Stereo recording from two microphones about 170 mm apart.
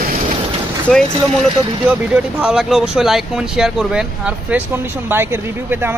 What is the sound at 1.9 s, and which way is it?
Speech, 10° right (ahead or behind).